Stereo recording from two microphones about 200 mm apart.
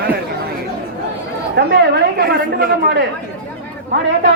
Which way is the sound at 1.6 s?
60° right (ahead or behind).